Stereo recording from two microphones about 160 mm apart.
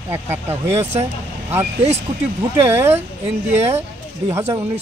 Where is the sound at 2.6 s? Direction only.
15° right (ahead or behind).